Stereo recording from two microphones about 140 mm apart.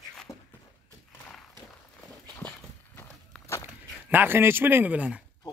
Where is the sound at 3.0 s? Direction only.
15° left (ahead or behind).